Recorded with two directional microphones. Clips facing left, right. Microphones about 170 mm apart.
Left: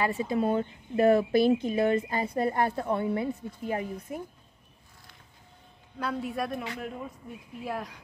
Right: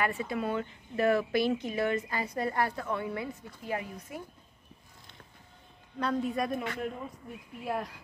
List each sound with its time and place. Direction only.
0.0 s speech: 25° left (ahead or behind)
3.6 s a woman's voice: 40° left (ahead or behind)
5.9 s speech: 5° left (ahead or behind)
7.6 s speech: centre (ahead or behind)